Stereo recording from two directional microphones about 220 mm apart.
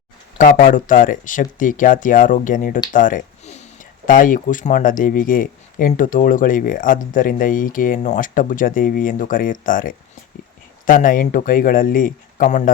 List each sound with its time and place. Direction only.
0.3 s speech: 40° left (ahead or behind)